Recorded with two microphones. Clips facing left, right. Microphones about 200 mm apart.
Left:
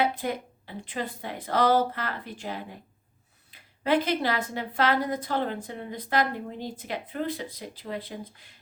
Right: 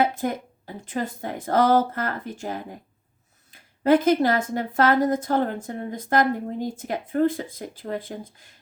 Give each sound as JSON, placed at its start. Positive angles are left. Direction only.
{"t": 0.0, "sound": "a woman's voice", "side_deg": -45}